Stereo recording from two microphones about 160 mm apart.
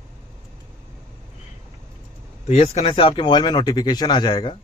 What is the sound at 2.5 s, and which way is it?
Speech, 45° left (ahead or behind).